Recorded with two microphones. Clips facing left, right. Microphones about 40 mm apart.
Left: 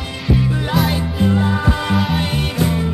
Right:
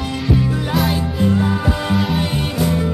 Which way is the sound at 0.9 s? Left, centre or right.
Centre.